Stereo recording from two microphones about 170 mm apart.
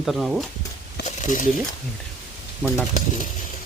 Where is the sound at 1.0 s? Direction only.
45° left (ahead or behind).